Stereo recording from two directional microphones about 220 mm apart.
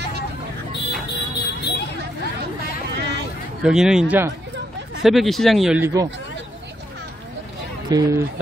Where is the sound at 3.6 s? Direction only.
5° right (ahead or behind).